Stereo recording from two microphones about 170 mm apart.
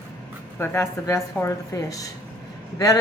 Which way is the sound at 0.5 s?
15° left (ahead or behind).